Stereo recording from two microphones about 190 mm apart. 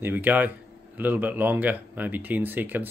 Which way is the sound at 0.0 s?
10° right (ahead or behind).